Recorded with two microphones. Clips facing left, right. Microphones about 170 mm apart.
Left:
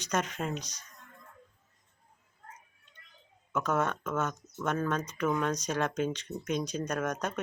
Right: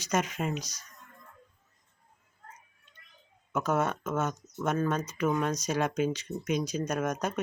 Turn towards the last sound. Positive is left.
turn(degrees=-10)  # may be behind; listen again after turning